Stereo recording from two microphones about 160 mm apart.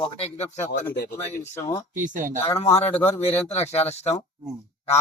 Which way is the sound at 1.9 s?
55° right (ahead or behind).